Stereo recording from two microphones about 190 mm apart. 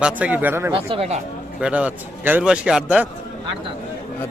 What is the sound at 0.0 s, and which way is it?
Speech, 10° right (ahead or behind).